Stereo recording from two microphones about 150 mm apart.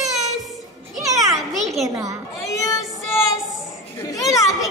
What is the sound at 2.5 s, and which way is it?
Child singing, 20° left (ahead or behind).